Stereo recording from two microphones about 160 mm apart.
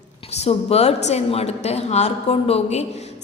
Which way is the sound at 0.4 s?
40° left (ahead or behind).